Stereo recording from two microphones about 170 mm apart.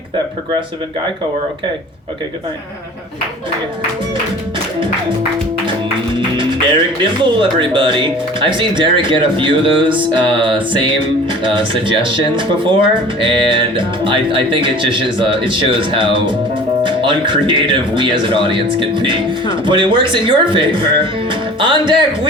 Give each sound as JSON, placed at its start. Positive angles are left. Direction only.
{"t": 6.1, "sound": "speech", "side_deg": -30}
{"t": 10.0, "sound": "music", "side_deg": -30}